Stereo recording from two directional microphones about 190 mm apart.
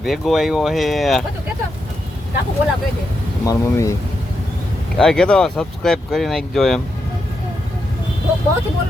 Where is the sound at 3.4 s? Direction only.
15° left (ahead or behind).